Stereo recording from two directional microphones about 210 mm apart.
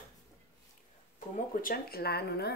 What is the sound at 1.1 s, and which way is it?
Speech, 40° left (ahead or behind).